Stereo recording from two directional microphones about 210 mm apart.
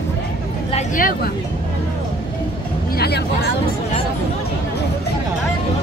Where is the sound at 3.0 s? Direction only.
50° left (ahead or behind).